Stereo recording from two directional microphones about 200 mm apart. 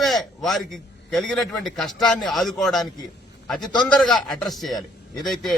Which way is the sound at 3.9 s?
Centre (ahead or behind).